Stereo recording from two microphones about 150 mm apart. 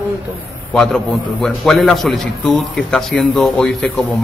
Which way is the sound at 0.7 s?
5° left (ahead or behind).